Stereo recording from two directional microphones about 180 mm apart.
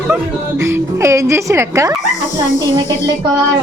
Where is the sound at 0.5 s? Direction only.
15° right (ahead or behind).